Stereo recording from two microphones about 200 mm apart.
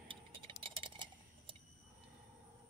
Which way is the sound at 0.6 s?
25° right (ahead or behind).